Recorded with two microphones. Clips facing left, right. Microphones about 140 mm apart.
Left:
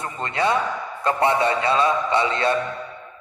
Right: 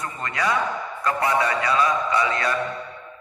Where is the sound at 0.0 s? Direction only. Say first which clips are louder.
Left 3 dB; 25° left (ahead or behind).